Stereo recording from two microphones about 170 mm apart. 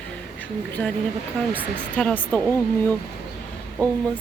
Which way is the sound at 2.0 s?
5° left (ahead or behind).